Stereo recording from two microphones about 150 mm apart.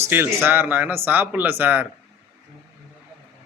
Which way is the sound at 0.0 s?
15° right (ahead or behind).